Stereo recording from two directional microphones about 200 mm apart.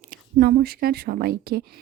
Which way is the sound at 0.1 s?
45° right (ahead or behind).